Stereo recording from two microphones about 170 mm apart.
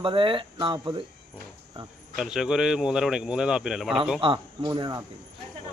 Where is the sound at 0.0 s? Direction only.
30° right (ahead or behind).